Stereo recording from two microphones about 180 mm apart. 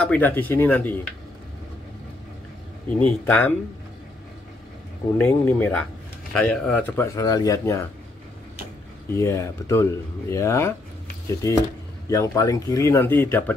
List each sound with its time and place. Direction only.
0.0 s speech: 10° left (ahead or behind)
3.0 s speech: 10° left (ahead or behind)
5.1 s speech: 10° left (ahead or behind)
9.1 s speech: 15° left (ahead or behind)